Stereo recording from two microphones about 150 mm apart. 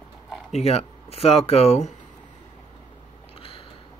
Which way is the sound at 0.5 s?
45° left (ahead or behind).